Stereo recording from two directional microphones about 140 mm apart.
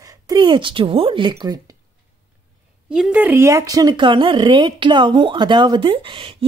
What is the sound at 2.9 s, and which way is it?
Speech, 10° right (ahead or behind).